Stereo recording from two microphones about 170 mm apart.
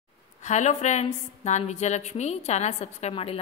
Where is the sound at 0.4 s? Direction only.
45° left (ahead or behind).